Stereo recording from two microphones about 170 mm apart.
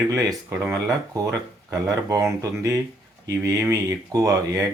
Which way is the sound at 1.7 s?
20° right (ahead or behind).